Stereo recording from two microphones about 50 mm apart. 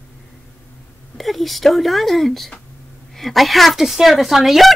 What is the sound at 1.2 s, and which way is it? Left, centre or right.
Speech, centre.